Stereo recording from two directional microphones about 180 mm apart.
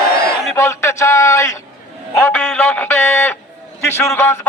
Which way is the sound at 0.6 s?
15° left (ahead or behind).